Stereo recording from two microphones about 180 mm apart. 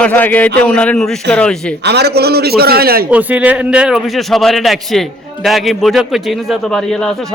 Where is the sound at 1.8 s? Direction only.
65° right (ahead or behind).